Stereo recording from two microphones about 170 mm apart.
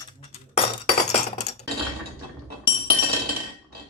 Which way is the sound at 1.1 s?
40° left (ahead or behind).